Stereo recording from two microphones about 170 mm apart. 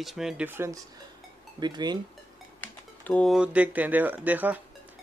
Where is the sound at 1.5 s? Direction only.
25° right (ahead or behind).